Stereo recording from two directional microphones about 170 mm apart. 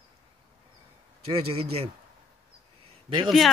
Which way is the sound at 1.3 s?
35° right (ahead or behind).